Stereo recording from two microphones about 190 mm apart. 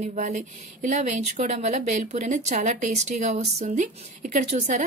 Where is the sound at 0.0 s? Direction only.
40° right (ahead or behind).